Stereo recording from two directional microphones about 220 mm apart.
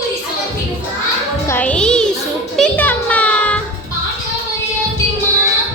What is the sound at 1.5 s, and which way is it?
Music, 5° left (ahead or behind).